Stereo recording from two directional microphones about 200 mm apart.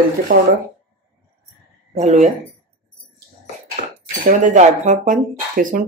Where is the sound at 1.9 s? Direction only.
35° right (ahead or behind).